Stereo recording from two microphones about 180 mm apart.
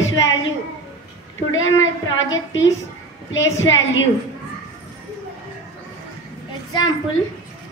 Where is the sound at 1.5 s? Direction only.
90° left.